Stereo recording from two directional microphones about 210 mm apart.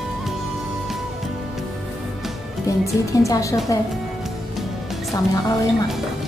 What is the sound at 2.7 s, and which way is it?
A woman's voice, 15° left (ahead or behind).